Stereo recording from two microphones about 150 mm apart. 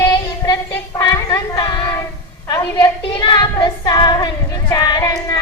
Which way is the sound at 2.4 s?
25° left (ahead or behind).